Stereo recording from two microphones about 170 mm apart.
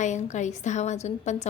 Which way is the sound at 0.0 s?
45° left (ahead or behind).